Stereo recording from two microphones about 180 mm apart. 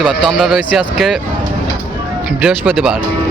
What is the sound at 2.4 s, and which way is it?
Speech, 5° right (ahead or behind).